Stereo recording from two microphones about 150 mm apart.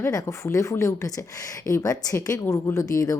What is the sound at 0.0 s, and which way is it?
A woman's voice, 20° left (ahead or behind).